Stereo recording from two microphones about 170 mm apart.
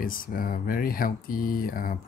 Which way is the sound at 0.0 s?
55° left (ahead or behind).